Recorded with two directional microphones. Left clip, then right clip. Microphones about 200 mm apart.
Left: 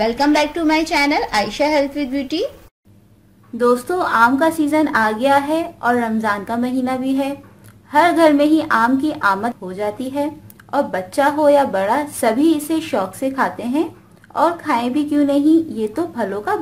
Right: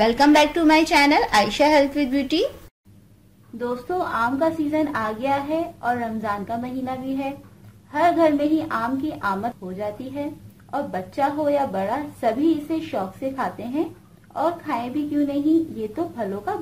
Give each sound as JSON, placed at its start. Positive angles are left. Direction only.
{"t": 0.0, "sound": "a woman's voice", "side_deg": 5}
{"t": 3.5, "sound": "a woman's voice", "side_deg": 45}